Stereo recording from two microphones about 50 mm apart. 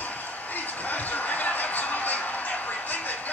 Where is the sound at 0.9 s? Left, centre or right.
Left.